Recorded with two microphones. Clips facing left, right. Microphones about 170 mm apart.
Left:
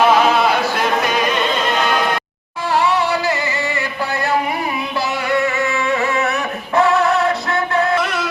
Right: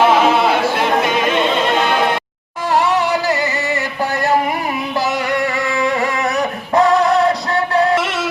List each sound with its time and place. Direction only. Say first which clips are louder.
0.1 s music: right 1 dB; 25° right (ahead or behind)
5.4 s music: right 1 dB; 35° right (ahead or behind)
7.9 s music: right 1 dB; 25° right (ahead or behind)